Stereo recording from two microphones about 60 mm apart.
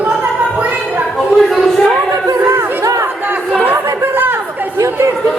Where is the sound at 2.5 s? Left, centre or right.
Right.